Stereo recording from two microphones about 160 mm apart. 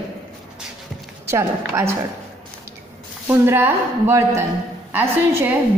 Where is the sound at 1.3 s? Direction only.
15° right (ahead or behind).